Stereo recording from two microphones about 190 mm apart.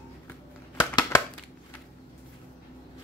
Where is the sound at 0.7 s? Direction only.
20° left (ahead or behind).